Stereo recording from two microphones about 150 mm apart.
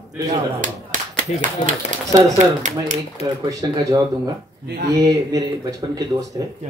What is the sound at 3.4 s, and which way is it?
Speech, 25° right (ahead or behind).